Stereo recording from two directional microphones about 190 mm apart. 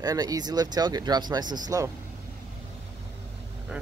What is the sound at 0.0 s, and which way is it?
Speech, 20° right (ahead or behind).